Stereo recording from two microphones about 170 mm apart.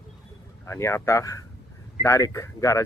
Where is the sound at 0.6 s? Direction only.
15° left (ahead or behind).